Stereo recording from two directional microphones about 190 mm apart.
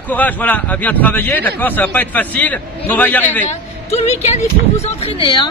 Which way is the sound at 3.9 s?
35° left (ahead or behind).